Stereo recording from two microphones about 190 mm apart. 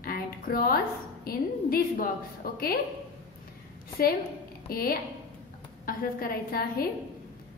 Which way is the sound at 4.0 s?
50° left (ahead or behind).